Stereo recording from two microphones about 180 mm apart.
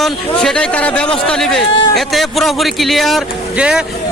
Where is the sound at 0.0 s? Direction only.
5° left (ahead or behind).